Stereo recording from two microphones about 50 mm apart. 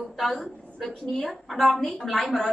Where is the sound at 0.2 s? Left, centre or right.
Centre.